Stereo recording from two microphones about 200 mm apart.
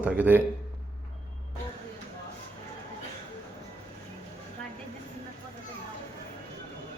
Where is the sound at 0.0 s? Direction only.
10° right (ahead or behind).